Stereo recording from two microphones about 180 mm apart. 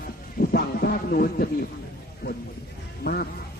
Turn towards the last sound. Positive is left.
turn(degrees=60)  # may be behind; listen again after turning